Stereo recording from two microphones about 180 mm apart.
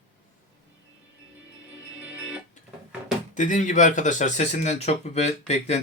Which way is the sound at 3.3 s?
45° left (ahead or behind).